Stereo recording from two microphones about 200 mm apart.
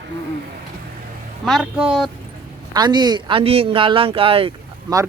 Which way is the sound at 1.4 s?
Centre (ahead or behind).